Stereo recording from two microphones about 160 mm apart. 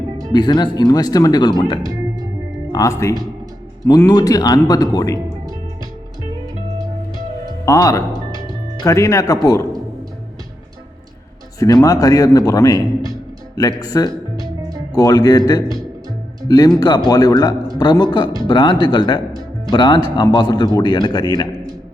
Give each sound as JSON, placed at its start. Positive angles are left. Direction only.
{"t": 0.3, "sound": "speech", "side_deg": 25}
{"t": 7.6, "sound": "speech", "side_deg": 20}
{"t": 11.6, "sound": "speech", "side_deg": 20}